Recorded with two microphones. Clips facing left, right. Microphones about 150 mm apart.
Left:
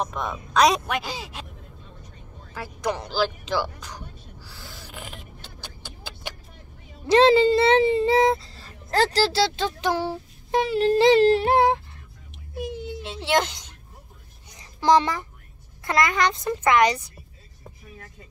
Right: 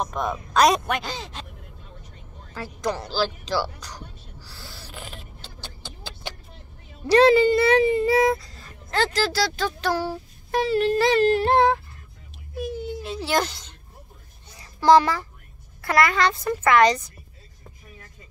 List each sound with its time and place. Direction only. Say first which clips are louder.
0.0 s speech: right 2 dB; centre (ahead or behind)
2.5 s speech: even; 15° left (ahead or behind)
4.4 s a sound: right 1 dB; 15° left (ahead or behind)
7.1 s a child's voice: even; 25° left (ahead or behind)
11.4 s speech: even; 10° left (ahead or behind)
12.5 s a sound: right 2 dB; 20° left (ahead or behind)
15.8 s a child's voice: right 2 dB; 20° left (ahead or behind)